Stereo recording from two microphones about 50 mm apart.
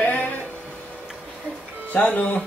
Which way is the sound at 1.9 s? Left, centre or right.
Left.